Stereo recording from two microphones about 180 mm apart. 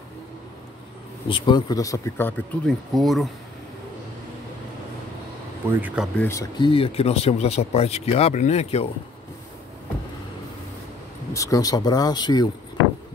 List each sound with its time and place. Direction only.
1.3 s speech: 25° left (ahead or behind); by 3.3 s centre (ahead or behind)
5.7 s speech: 10° right (ahead or behind)
6.1 s speech: 15° left (ahead or behind)
6.7 s speech: 35° left (ahead or behind)
11.3 s speech: 20° left (ahead or behind)